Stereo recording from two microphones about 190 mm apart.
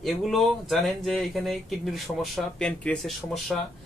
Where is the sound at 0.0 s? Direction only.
Centre (ahead or behind).